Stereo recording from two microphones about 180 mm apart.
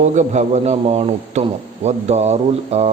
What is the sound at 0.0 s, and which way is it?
A man's voice, 40° right (ahead or behind).